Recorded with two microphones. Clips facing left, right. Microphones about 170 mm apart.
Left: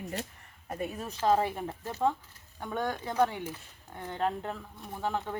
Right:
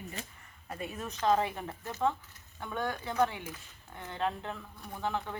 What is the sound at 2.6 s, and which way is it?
Speech, 15° left (ahead or behind).